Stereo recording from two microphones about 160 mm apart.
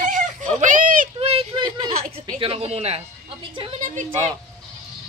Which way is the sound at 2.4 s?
40° right (ahead or behind).